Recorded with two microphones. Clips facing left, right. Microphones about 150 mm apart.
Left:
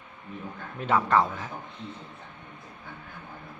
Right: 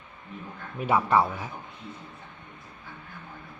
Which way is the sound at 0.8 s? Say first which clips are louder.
Right 1 dB; 10° right (ahead or behind).